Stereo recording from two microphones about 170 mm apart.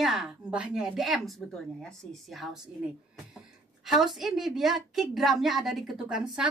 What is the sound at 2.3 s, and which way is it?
Speech, centre (ahead or behind).